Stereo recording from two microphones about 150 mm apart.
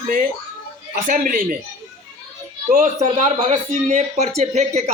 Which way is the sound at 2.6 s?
55° right (ahead or behind).